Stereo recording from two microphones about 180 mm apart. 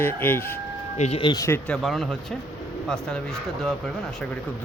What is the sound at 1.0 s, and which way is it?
Speech, 35° left (ahead or behind).